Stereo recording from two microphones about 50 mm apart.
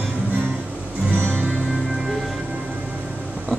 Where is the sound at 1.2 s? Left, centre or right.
Right.